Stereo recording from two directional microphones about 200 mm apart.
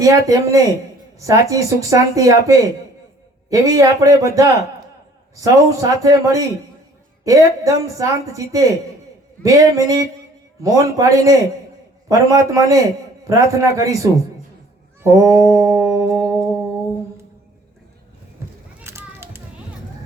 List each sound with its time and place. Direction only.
0.0 s a woman's voice: 15° right (ahead or behind)
18.8 s children playing: 15° right (ahead or behind)